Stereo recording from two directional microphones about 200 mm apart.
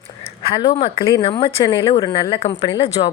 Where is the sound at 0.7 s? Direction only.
30° left (ahead or behind).